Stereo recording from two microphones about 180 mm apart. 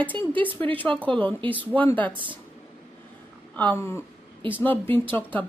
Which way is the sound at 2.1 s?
30° right (ahead or behind).